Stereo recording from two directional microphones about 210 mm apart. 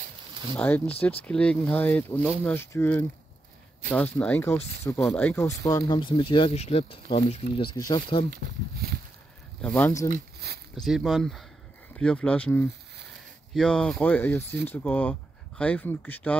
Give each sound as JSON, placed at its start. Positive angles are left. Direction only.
{"t": 0.6, "sound": "speech", "side_deg": 5}
{"t": 9.6, "sound": "speech", "side_deg": 5}
{"t": 10.0, "sound": "a sound", "side_deg": -45}
{"t": 10.7, "sound": "speech", "side_deg": 0}